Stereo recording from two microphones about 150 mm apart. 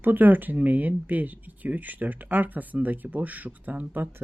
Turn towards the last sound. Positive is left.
turn(degrees=-10)  # may be behind; listen again after turning